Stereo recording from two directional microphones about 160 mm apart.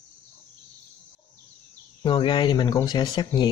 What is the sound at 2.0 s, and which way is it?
Speech, 30° left (ahead or behind).